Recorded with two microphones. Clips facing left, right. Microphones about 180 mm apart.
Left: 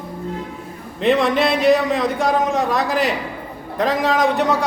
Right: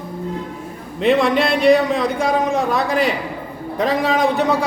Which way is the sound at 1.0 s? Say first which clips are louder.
Right 1 dB; centre (ahead or behind).